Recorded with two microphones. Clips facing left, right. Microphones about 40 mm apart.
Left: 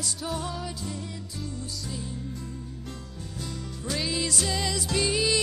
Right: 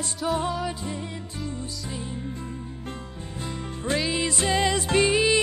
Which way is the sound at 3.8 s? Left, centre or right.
Right.